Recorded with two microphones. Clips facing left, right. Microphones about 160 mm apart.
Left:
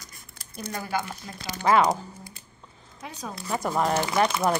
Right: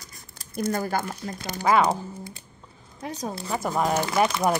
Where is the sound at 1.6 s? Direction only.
5° right (ahead or behind).